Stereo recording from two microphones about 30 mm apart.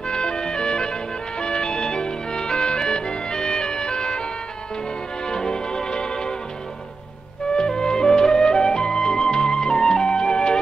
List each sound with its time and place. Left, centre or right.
0.1 s music: left
5.3 s music: left
7.5 s music: left